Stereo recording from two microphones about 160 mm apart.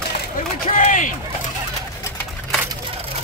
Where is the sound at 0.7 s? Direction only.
55° left (ahead or behind).